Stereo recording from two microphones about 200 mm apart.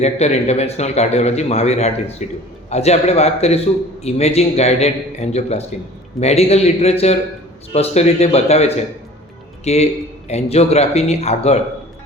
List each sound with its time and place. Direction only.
0.0 s a man's voice: 35° left (ahead or behind)